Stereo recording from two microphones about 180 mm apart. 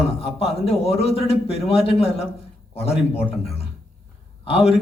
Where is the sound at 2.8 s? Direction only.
35° left (ahead or behind).